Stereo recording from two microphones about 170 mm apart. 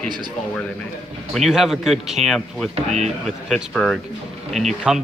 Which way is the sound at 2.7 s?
40° right (ahead or behind).